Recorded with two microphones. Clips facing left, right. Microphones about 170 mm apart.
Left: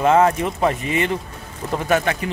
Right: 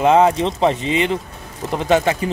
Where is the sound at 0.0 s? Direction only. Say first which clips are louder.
Right 2 dB; 20° right (ahead or behind).